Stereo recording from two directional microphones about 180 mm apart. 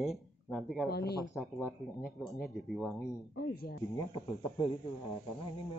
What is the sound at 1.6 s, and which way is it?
Speech, 15° left (ahead or behind).